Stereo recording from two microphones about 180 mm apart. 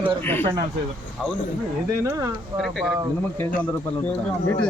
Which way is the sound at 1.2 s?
Centre (ahead or behind).